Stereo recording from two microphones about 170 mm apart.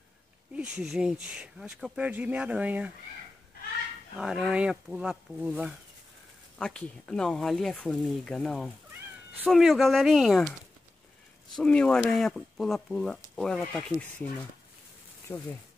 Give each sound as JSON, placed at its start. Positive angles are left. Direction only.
{"t": 0.6, "sound": "speech", "side_deg": -5}
{"t": 4.2, "sound": "speech", "side_deg": -5}
{"t": 6.6, "sound": "speech", "side_deg": 5}
{"t": 11.5, "sound": "speech", "side_deg": 5}
{"t": 15.3, "sound": "speech", "side_deg": 20}